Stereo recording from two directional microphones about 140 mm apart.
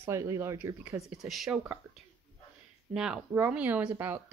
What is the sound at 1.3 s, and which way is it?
Speech, centre (ahead or behind).